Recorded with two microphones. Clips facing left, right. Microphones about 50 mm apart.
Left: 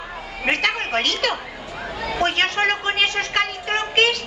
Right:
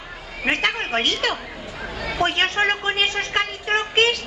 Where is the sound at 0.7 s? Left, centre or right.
Centre.